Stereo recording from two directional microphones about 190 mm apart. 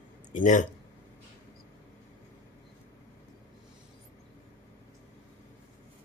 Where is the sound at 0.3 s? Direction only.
40° left (ahead or behind).